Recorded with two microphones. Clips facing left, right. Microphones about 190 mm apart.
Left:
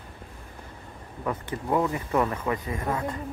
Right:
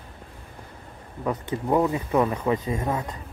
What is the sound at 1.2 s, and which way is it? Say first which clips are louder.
Speech: right 3 dB; 15° right (ahead or behind).